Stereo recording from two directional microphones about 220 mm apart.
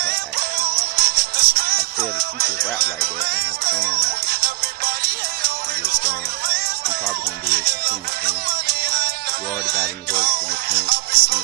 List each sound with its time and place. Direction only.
0.0 s music: 45° right (ahead or behind)